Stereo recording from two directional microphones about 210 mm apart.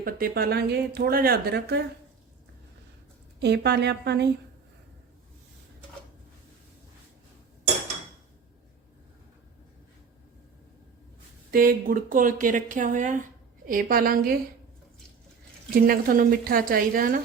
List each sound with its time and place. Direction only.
0.0 s speech: 45° right (ahead or behind)
3.4 s speech: 55° right (ahead or behind)
11.5 s speech: 45° right (ahead or behind)
15.7 s speech: 45° right (ahead or behind)